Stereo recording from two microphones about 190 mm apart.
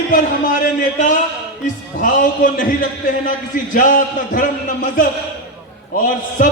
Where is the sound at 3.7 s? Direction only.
45° left (ahead or behind).